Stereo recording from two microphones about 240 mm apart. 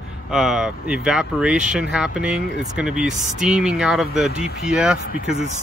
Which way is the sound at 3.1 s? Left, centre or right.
Right.